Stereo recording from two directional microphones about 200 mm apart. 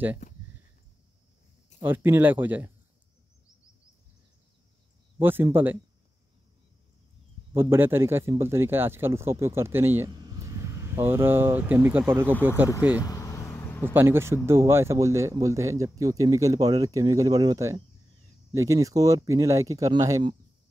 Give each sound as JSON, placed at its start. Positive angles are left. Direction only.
{"t": 1.8, "sound": "speech", "side_deg": -10}
{"t": 5.2, "sound": "speech", "side_deg": -10}
{"t": 7.5, "sound": "speech", "side_deg": -10}
{"t": 13.0, "sound": "a sound", "side_deg": 15}
{"t": 13.9, "sound": "speech", "side_deg": -10}